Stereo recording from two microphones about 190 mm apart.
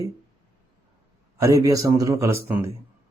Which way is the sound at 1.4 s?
15° right (ahead or behind).